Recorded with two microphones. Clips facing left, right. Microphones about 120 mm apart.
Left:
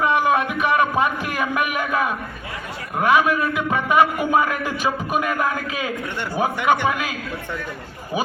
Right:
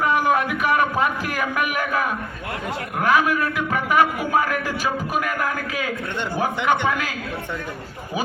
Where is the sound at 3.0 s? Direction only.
20° left (ahead or behind).